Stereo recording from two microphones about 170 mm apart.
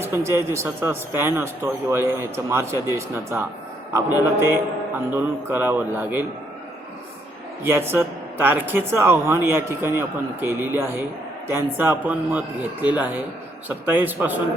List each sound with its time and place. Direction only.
0.0 s a man's voice: 15° right (ahead or behind)
7.6 s a man's voice: 15° right (ahead or behind)